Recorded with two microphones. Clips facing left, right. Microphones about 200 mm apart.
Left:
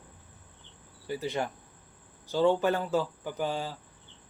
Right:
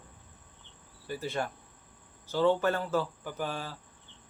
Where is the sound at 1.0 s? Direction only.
15° left (ahead or behind).